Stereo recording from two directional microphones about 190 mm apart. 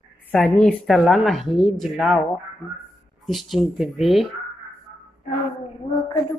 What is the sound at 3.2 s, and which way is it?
Speech, centre (ahead or behind).